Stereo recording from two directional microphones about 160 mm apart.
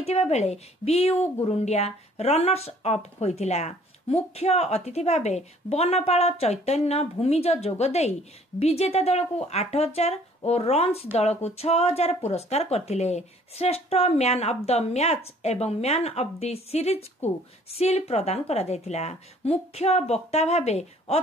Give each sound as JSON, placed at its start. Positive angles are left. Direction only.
{"t": 0.0, "sound": "a woman's voice", "side_deg": 40}